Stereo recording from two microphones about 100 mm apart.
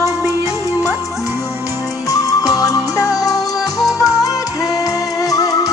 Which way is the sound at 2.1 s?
35° left (ahead or behind).